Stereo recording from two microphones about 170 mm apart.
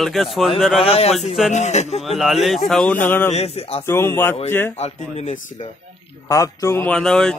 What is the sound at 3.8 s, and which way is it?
Speech, 15° left (ahead or behind).